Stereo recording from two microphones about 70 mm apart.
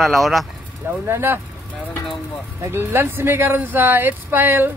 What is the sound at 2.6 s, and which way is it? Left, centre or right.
Speech, right.